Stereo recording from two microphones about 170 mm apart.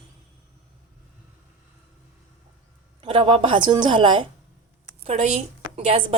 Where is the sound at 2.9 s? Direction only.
30° right (ahead or behind).